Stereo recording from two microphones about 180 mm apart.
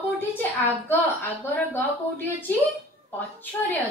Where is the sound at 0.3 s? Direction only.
10° left (ahead or behind).